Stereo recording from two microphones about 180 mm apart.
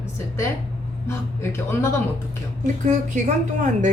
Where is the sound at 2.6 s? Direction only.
40° right (ahead or behind).